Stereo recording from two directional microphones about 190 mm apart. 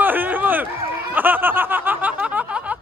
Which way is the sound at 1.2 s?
10° right (ahead or behind).